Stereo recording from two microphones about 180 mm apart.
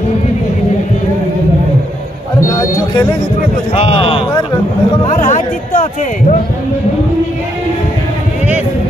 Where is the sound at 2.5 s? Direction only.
15° left (ahead or behind).